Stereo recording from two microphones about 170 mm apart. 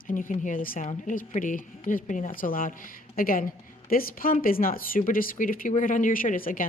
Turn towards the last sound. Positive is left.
turn(degrees=55)  # may be behind; listen again after turning